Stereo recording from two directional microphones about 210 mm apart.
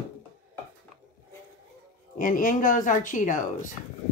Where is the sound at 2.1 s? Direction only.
40° left (ahead or behind).